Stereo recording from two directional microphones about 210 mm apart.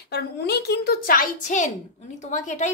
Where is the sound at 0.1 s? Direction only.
50° left (ahead or behind).